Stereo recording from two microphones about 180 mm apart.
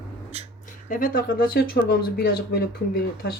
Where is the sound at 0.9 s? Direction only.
50° left (ahead or behind).